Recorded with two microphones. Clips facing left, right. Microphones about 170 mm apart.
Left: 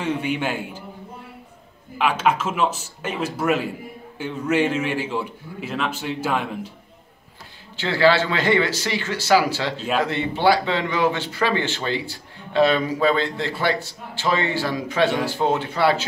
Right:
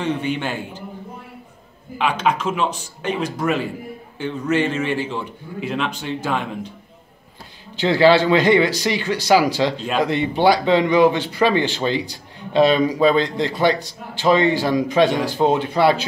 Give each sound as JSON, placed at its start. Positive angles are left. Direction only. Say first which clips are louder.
{"t": 0.0, "sound": "a man's voice", "louder": "right 1 dB", "side_deg": 10}
{"t": 2.0, "sound": "a man's voice", "louder": "even", "side_deg": 5}
{"t": 7.7, "sound": "speech", "louder": "right 4 dB", "side_deg": -15}